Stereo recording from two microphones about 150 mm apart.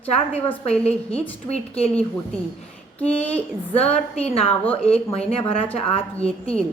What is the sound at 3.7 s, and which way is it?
Speech, 40° left (ahead or behind).